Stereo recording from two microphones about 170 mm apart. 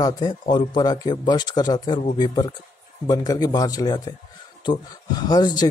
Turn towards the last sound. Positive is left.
turn(degrees=25)  # may be behind; listen again after turning